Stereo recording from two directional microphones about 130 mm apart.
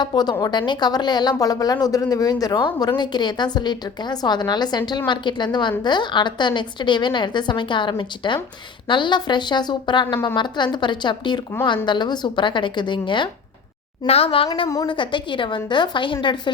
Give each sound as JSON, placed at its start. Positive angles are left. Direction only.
{"t": 0.0, "sound": "a woman's voice", "side_deg": 35}